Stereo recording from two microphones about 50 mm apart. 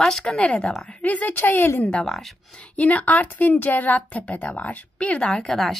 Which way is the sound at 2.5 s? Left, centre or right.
Left.